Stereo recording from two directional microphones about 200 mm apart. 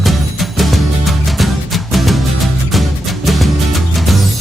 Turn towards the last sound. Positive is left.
turn(degrees=0)  # may be behind; listen again after turning